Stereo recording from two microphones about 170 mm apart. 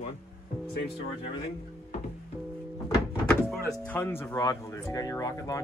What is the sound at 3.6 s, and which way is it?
Speech, 10° left (ahead or behind).